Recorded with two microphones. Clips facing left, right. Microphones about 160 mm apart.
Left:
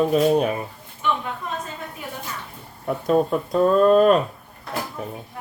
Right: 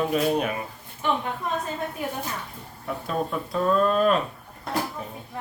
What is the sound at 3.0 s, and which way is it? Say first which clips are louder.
Speech: left 9 dB; 45° left (ahead or behind).